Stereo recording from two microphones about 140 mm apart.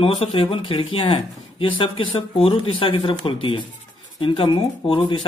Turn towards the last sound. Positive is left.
turn(degrees=35)  # may be behind; listen again after turning